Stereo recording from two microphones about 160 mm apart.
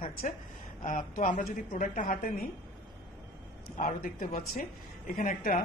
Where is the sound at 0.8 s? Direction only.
55° left (ahead or behind).